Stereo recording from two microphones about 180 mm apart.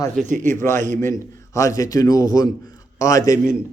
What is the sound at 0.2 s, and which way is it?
Speech, 45° right (ahead or behind).